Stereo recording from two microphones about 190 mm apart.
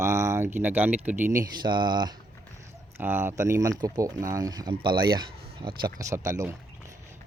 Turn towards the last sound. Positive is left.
turn(degrees=-15)  # may be behind; listen again after turning